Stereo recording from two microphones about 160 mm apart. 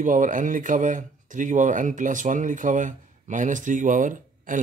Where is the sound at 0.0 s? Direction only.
55° right (ahead or behind).